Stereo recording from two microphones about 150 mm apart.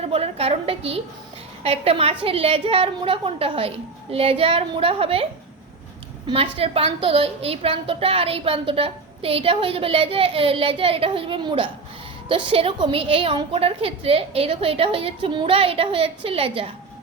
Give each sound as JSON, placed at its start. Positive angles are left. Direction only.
{"t": 0.0, "sound": "a woman's voice", "side_deg": -40}
{"t": 6.2, "sound": "a woman's voice", "side_deg": -40}